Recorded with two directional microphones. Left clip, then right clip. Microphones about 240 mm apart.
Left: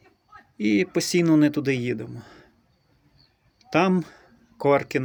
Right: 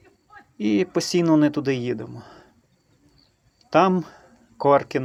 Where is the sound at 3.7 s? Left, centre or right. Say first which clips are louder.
Right 4 dB; centre.